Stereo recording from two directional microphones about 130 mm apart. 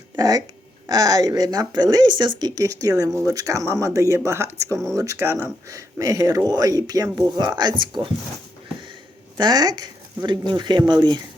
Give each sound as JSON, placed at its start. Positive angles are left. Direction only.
{"t": 0.2, "sound": "speech", "side_deg": -30}
{"t": 9.4, "sound": "speech", "side_deg": -30}